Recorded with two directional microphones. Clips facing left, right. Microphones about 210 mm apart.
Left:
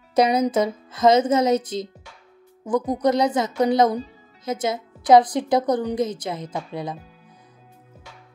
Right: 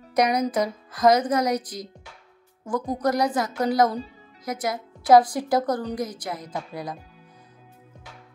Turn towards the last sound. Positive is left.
turn(degrees=25)  # may be behind; listen again after turning